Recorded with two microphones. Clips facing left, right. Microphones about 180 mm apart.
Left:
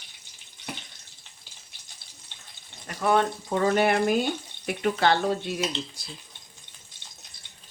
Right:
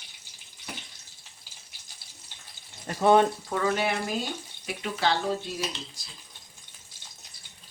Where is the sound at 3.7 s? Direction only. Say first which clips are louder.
Left 7 dB; 55° left (ahead or behind).